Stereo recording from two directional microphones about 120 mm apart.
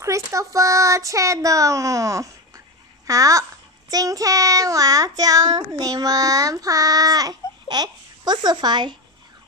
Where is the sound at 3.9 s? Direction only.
30° right (ahead or behind).